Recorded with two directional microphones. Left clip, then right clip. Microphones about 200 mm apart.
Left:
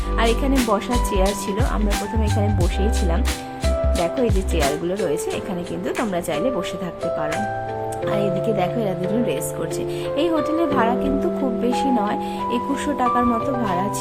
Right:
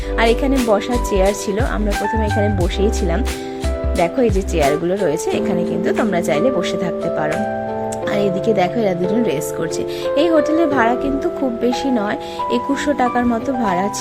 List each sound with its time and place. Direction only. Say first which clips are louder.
0.2 s speech: right 5 dB; 15° right (ahead or behind)
4.0 s speech: right 5 dB; 15° right (ahead or behind)
8.1 s speech: right 5 dB; 15° right (ahead or behind)